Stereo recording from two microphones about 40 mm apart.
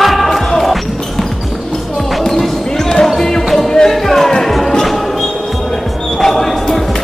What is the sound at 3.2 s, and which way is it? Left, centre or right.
Music, centre.